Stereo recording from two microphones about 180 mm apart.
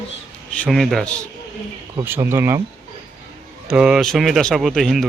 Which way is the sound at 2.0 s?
10° right (ahead or behind).